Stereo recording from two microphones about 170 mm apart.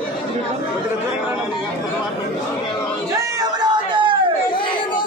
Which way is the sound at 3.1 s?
25° right (ahead or behind).